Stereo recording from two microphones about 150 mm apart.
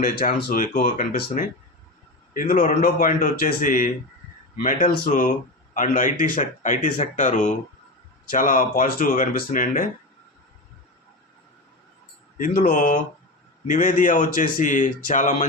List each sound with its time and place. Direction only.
0.0 s speech: 75° left (ahead or behind)
5.7 s speech: 60° left (ahead or behind)
12.4 s speech: 65° left (ahead or behind)